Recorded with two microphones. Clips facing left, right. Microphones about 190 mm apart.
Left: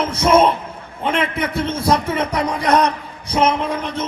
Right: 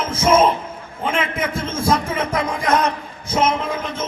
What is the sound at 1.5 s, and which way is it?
Speech, 65° left (ahead or behind).